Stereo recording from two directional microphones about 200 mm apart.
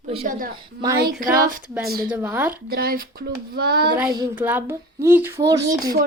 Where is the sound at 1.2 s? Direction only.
45° right (ahead or behind).